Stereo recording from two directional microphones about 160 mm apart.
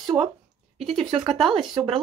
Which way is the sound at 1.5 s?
30° right (ahead or behind).